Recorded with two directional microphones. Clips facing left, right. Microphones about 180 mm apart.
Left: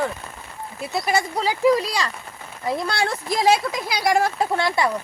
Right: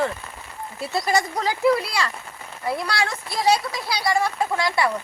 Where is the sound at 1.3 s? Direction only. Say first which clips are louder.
Left 4 dB; 10° left (ahead or behind).